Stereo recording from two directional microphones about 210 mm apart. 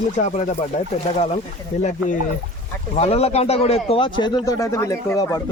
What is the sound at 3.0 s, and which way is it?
A man's voice, 30° left (ahead or behind).